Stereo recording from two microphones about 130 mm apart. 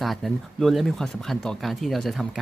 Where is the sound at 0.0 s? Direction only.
Centre (ahead or behind).